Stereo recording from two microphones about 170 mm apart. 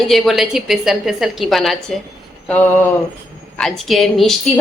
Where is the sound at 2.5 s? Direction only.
10° left (ahead or behind).